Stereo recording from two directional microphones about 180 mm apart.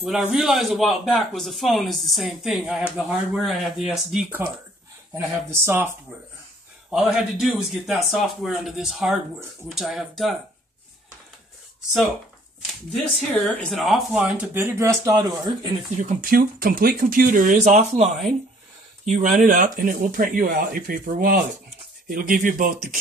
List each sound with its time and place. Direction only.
0.0 s speech: centre (ahead or behind)
6.9 s speech: 5° right (ahead or behind)
12.9 s speech: 5° left (ahead or behind); by 15.7 s 20° right (ahead or behind)
16.0 s speech: 50° right (ahead or behind)
19.0 s speech: 45° right (ahead or behind)